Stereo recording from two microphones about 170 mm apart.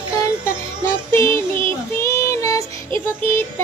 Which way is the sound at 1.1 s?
15° left (ahead or behind).